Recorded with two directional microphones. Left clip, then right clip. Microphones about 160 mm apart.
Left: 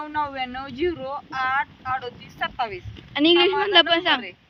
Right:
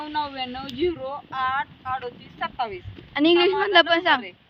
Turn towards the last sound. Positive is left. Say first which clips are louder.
# even
turn(degrees=0)  # may be behind; listen again after turning